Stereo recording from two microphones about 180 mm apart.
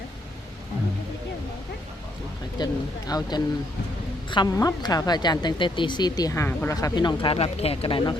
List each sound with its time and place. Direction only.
2.6 s a woman's voice: 25° left (ahead or behind)